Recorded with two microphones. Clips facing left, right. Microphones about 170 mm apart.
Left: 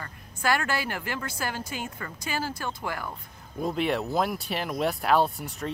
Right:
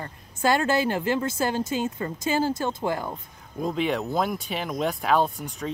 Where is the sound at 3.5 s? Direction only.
Centre (ahead or behind).